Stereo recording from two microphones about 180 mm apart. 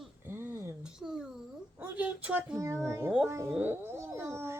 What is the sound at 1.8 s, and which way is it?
A woman's voice, 10° right (ahead or behind).